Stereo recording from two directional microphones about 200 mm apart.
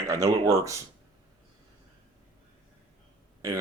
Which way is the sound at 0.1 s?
15° right (ahead or behind).